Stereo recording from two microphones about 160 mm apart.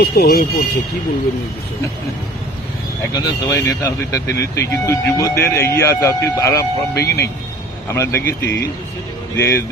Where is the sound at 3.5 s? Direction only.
20° left (ahead or behind).